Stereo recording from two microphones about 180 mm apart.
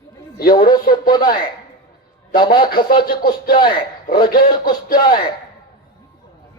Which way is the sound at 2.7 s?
55° left (ahead or behind).